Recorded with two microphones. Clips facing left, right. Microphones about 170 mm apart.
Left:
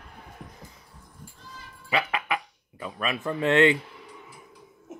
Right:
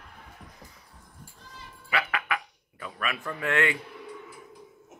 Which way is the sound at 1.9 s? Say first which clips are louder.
Left 3 dB; 20° left (ahead or behind).